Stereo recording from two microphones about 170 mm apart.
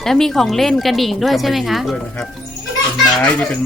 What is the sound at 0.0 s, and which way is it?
Speech, centre (ahead or behind).